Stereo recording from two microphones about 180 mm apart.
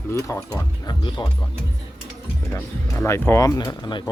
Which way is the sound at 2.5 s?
15° left (ahead or behind).